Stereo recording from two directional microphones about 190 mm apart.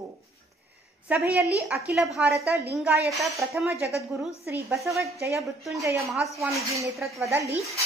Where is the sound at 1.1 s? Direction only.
10° right (ahead or behind).